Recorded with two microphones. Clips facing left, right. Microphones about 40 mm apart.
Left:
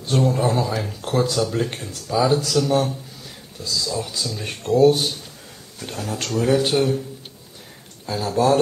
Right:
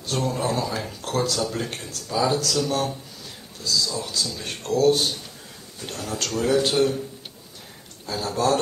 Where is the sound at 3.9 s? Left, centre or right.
Centre.